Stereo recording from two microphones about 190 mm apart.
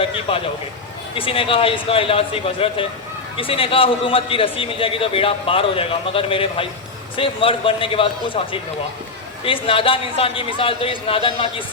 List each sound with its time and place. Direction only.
0.0 s a man's voice: 30° left (ahead or behind)
9.4 s a man's voice: 30° left (ahead or behind)